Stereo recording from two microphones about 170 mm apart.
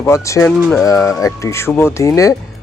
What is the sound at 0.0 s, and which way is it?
Speech, 15° left (ahead or behind).